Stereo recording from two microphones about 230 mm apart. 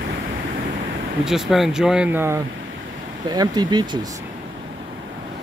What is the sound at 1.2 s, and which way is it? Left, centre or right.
Speech, centre.